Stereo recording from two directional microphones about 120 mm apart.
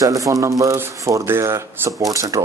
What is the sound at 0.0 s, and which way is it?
Speech, 30° right (ahead or behind).